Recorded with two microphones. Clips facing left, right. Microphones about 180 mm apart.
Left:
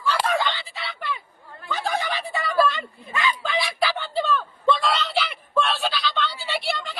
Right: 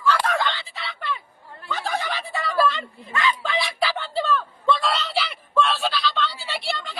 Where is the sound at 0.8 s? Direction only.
5° left (ahead or behind).